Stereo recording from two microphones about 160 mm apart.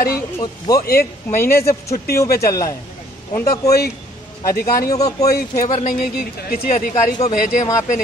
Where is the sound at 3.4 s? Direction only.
20° left (ahead or behind).